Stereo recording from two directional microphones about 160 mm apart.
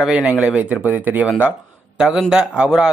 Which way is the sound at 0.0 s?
Centre (ahead or behind).